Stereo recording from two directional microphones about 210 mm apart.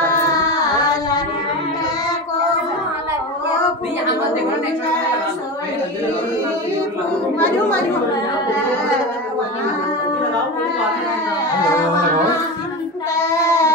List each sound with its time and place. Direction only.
13.1 s child singing: 15° left (ahead or behind)